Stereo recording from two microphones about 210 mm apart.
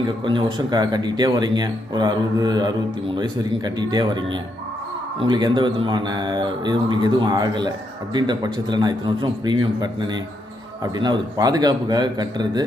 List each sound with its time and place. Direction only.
0.3 s a man's voice: 20° right (ahead or behind)
3.8 s a man's voice: 20° right (ahead or behind)